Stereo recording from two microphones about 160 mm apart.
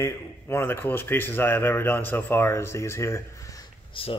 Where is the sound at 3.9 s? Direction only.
35° left (ahead or behind).